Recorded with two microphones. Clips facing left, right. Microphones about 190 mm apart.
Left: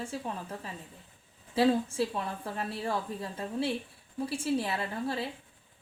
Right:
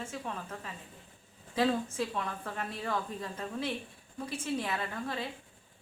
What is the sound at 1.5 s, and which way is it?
Speech, 30° left (ahead or behind).